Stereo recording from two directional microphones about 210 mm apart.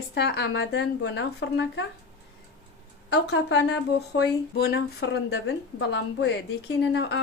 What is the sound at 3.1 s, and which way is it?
A woman's voice, 55° left (ahead or behind).